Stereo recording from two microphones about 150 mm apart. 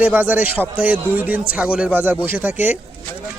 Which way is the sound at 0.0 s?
10° right (ahead or behind).